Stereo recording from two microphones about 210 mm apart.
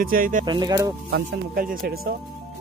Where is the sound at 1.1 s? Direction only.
50° right (ahead or behind).